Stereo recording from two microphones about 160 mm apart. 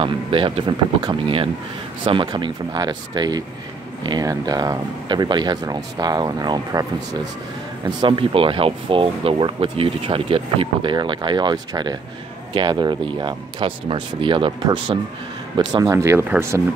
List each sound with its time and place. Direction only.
0.0 s speech: 35° right (ahead or behind); by 16.6 s 15° right (ahead or behind)